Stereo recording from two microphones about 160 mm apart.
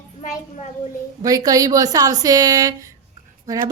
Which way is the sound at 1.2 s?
20° right (ahead or behind).